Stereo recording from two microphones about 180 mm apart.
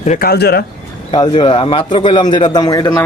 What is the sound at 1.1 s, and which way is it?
A man's voice, 25° left (ahead or behind).